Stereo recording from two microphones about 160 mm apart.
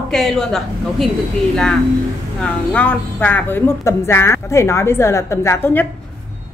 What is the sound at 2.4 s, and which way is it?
A woman's voice, 10° left (ahead or behind).